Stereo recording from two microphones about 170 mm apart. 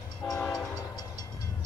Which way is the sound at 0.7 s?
20° left (ahead or behind).